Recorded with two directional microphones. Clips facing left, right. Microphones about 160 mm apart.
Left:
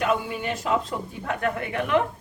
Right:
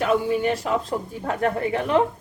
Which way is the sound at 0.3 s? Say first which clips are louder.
Right 4 dB; 40° right (ahead or behind).